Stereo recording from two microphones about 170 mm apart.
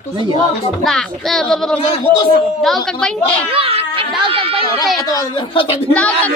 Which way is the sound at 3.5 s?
35° right (ahead or behind).